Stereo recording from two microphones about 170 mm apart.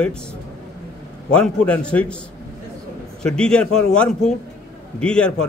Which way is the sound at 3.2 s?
5° left (ahead or behind).